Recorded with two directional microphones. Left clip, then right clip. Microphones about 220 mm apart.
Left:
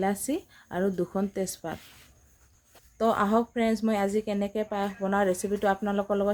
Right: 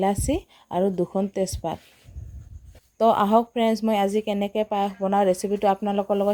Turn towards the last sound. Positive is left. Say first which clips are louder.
# right 4 dB
turn(degrees=-20)  # may be behind; listen again after turning